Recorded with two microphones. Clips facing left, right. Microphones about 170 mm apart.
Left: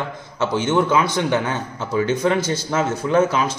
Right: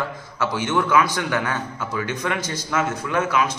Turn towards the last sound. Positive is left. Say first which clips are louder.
# left 4 dB
turn(degrees=30)  # may be behind; listen again after turning